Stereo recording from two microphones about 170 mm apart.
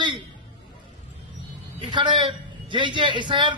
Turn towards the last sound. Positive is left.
turn(degrees=-30)  # may be behind; listen again after turning